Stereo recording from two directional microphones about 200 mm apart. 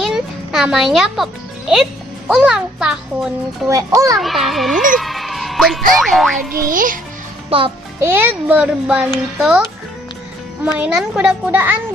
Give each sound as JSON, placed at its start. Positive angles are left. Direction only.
{"t": 0.0, "sound": "a child's voice", "side_deg": 0}
{"t": 3.7, "sound": "a child's voice", "side_deg": -15}
{"t": 4.2, "sound": "a child's voice", "side_deg": 0}
{"t": 4.9, "sound": "music", "side_deg": 0}
{"t": 6.0, "sound": "a child's voice", "side_deg": 0}
{"t": 6.5, "sound": "a child's voice", "side_deg": -45}
{"t": 7.5, "sound": "music", "side_deg": -30}
{"t": 8.0, "sound": "a child's voice", "side_deg": -10}